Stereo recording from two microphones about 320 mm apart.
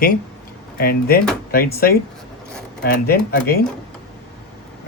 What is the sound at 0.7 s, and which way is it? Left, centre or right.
Speech, left.